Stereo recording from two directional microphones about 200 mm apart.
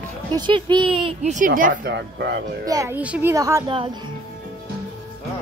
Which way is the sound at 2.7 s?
15° right (ahead or behind).